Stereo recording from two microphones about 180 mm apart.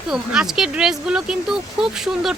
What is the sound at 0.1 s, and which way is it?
Speech, 5° right (ahead or behind).